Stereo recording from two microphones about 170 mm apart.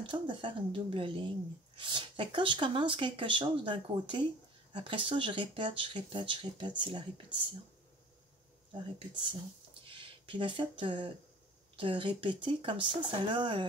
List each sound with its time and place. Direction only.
0.0 s speech: 30° right (ahead or behind)
8.7 s speech: 30° right (ahead or behind)